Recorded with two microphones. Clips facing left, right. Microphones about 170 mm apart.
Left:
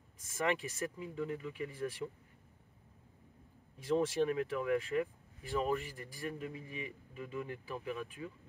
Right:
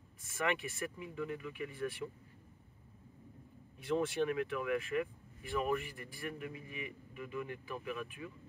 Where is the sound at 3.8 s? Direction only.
40° left (ahead or behind).